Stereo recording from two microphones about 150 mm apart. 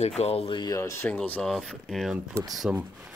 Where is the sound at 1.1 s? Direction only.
5° left (ahead or behind).